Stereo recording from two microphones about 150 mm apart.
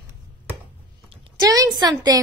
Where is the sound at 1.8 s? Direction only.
25° right (ahead or behind).